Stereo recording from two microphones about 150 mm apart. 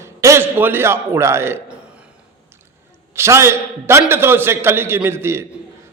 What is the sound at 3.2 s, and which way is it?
A man's voice, 15° right (ahead or behind).